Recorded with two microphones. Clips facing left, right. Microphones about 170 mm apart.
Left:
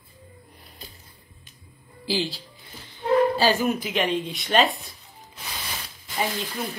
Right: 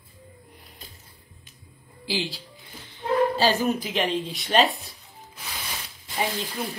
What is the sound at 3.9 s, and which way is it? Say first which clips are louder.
Speech: left 1 dB; centre (ahead or behind).